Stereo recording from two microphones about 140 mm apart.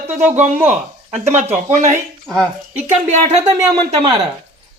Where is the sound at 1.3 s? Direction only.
55° right (ahead or behind).